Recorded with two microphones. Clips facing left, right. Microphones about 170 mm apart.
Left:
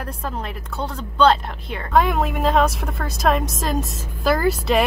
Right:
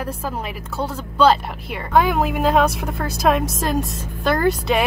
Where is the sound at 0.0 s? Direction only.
5° right (ahead or behind).